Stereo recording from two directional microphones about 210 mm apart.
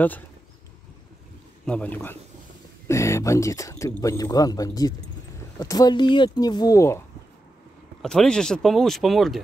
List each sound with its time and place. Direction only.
1.7 s speech: 5° left (ahead or behind)
8.0 s speech: 5° left (ahead or behind)